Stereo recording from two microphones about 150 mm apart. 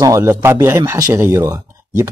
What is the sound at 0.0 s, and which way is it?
Speech, 20° right (ahead or behind).